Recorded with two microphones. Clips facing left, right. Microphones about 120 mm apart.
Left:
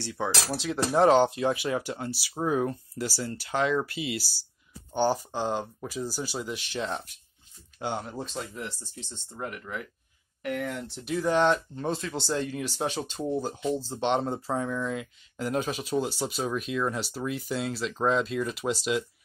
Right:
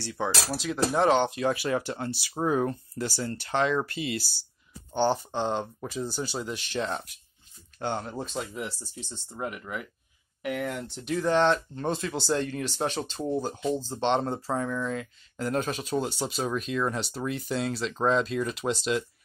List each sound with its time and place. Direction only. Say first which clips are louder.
0.2 s speech: right 1 dB; 10° left (ahead or behind)
0.6 s speech: left 2 dB; 30° left (ahead or behind)
1.4 s speech: even; 20° left (ahead or behind)